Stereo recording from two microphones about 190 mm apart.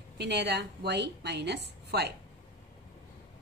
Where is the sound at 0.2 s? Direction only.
60° right (ahead or behind).